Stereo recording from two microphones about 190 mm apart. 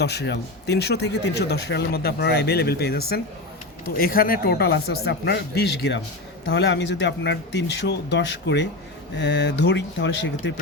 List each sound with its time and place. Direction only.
0.0 s speech: 60° left (ahead or behind)